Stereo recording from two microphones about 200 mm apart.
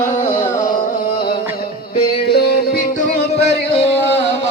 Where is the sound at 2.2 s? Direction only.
55° left (ahead or behind).